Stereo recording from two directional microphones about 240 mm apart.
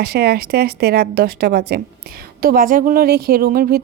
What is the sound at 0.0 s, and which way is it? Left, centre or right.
A woman's voice, right.